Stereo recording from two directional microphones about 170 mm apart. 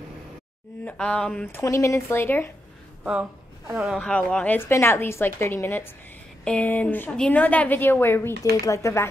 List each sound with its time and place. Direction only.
0.8 s a woman's voice: 5° left (ahead or behind)
3.0 s a woman's voice: 10° right (ahead or behind)
4.0 s a woman's voice: 5° left (ahead or behind)